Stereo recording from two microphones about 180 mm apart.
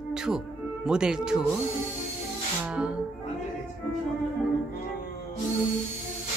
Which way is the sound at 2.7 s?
5° right (ahead or behind).